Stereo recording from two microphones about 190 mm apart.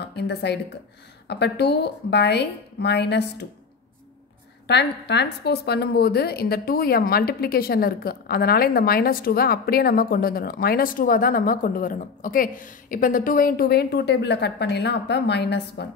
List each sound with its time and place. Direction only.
0.0 s a woman's voice: 60° left (ahead or behind)
4.6 s a woman's voice: 65° left (ahead or behind)